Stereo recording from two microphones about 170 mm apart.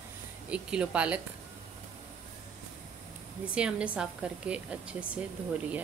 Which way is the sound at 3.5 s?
5° right (ahead or behind).